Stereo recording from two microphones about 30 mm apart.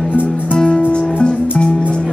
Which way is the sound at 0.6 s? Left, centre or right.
Left.